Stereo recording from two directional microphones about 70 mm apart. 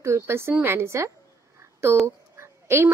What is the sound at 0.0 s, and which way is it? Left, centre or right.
A woman's voice, right.